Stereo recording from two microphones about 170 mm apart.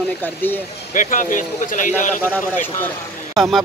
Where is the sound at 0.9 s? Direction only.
50° left (ahead or behind).